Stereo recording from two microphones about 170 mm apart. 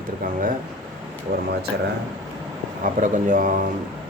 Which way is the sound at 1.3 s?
60° right (ahead or behind).